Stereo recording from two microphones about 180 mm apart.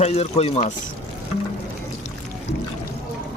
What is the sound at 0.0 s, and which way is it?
Speech, 35° left (ahead or behind).